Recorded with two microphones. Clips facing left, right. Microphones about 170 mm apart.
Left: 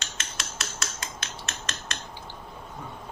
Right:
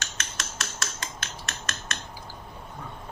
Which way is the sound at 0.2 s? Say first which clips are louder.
Left 1 dB; 25° left (ahead or behind).